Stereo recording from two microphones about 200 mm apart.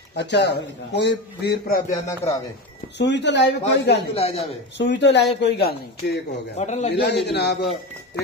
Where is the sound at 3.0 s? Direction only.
60° left (ahead or behind).